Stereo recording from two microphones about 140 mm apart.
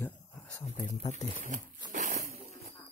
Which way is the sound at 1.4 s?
65° right (ahead or behind).